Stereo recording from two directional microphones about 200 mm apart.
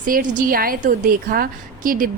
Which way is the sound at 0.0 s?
40° right (ahead or behind).